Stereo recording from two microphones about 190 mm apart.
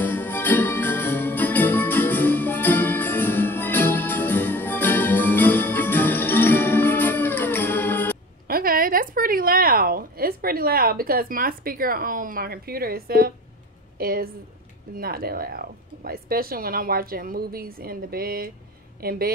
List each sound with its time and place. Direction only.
0.0 s jingle bell: 10° left (ahead or behind)
8.5 s a sound: 50° right (ahead or behind)
13.9 s a woman's voice: 50° right (ahead or behind)